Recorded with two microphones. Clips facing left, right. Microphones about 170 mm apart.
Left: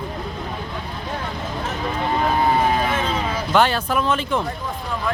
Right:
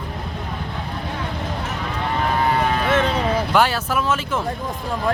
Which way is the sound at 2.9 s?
75° right (ahead or behind).